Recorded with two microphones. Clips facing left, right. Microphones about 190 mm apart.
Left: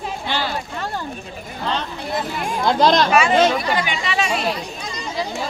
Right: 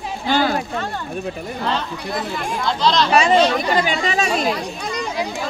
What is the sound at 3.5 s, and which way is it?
Speech, 40° right (ahead or behind).